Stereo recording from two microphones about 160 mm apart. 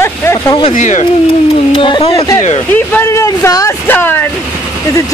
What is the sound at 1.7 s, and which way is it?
Speech, 30° left (ahead or behind).